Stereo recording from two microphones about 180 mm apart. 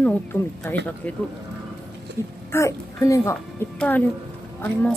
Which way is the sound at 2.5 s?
15° left (ahead or behind).